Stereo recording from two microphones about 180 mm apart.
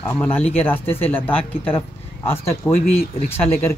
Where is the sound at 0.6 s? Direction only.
10° left (ahead or behind).